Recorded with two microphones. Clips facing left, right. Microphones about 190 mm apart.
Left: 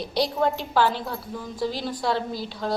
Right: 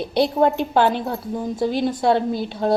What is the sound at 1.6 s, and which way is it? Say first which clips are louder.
Speech: right 6 dB; 55° right (ahead or behind).